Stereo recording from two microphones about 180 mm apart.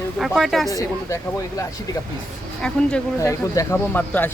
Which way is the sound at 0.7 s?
15° left (ahead or behind).